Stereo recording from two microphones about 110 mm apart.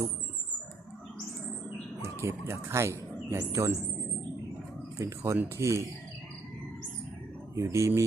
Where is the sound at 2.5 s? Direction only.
25° right (ahead or behind).